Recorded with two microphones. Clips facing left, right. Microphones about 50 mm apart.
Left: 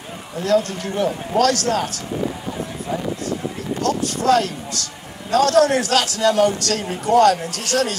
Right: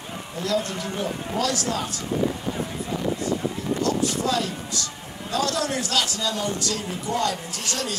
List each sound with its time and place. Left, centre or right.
0.4 s a man's voice: left
3.8 s a man's voice: left